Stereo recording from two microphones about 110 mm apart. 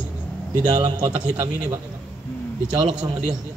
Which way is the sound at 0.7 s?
40° right (ahead or behind).